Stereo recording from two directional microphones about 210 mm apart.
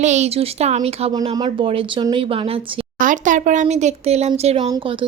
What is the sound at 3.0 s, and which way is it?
A woman's voice, 40° right (ahead or behind).